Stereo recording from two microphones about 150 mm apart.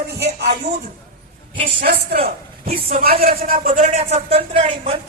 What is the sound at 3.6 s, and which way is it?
Speech, 60° right (ahead or behind).